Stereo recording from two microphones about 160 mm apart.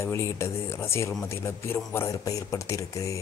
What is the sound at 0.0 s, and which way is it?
Speech, 15° left (ahead or behind).